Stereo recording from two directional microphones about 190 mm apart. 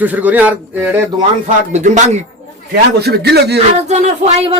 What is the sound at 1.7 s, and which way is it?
Speech, 40° right (ahead or behind).